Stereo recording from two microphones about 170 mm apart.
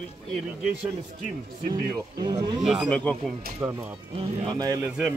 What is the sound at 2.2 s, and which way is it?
Speech, 25° right (ahead or behind).